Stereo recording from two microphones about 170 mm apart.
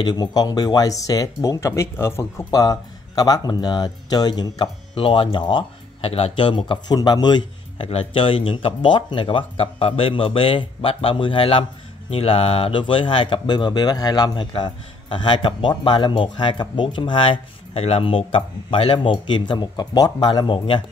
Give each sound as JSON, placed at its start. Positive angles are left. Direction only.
{"t": 0.0, "sound": "speech", "side_deg": 25}